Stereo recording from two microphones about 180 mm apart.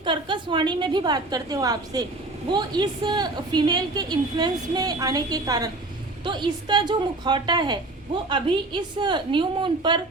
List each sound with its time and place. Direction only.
0.0 s a woman's voice: 25° right (ahead or behind)